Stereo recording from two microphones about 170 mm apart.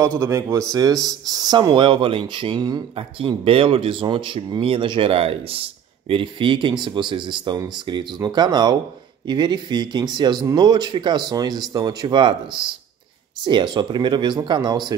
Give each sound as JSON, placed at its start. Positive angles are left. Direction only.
{"t": 0.2, "sound": "speech", "side_deg": -15}
{"t": 13.5, "sound": "speech", "side_deg": -25}